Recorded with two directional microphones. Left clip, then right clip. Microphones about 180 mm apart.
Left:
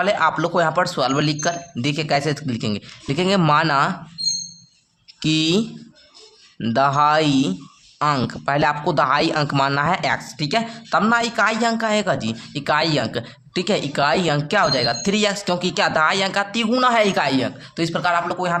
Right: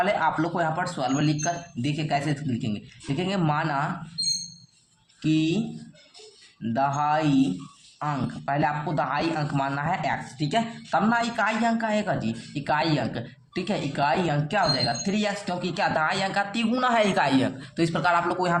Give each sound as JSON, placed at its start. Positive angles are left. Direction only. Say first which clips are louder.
{"t": 0.0, "sound": "speech", "louder": "left 5 dB", "side_deg": 40}
{"t": 5.2, "sound": "speech", "louder": "left 6 dB", "side_deg": 45}